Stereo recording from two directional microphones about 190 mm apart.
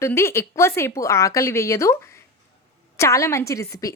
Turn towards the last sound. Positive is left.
turn(degrees=15)  # may be behind; listen again after turning